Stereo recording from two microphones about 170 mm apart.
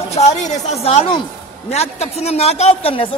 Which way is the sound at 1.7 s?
40° left (ahead or behind).